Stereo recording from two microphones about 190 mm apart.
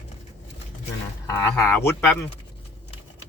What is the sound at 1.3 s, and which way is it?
Speech, 15° left (ahead or behind).